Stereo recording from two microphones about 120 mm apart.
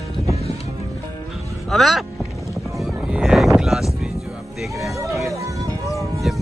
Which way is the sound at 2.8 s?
5° right (ahead or behind).